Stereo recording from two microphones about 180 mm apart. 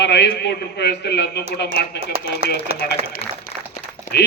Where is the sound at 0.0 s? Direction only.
70° left (ahead or behind).